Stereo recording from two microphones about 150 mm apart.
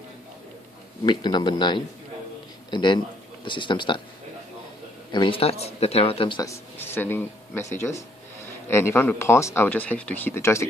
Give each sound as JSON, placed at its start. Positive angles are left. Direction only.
{"t": 1.0, "sound": "speech", "side_deg": 30}
{"t": 5.1, "sound": "speech", "side_deg": 35}
{"t": 6.4, "sound": "speech", "side_deg": 15}